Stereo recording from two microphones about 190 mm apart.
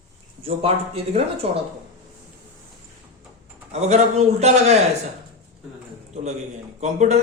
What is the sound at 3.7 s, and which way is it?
Speech, 35° right (ahead or behind).